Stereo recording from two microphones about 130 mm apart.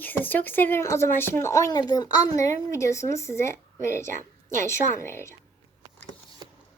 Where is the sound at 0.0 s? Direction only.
15° left (ahead or behind).